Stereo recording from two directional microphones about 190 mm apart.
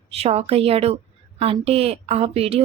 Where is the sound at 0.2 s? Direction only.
30° right (ahead or behind).